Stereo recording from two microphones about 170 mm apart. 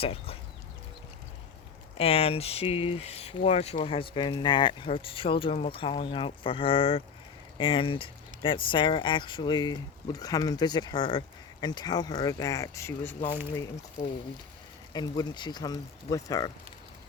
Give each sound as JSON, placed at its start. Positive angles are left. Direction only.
{"t": 0.0, "sound": "speech", "side_deg": 35}
{"t": 2.0, "sound": "speech", "side_deg": 35}
{"t": 14.9, "sound": "speech", "side_deg": 25}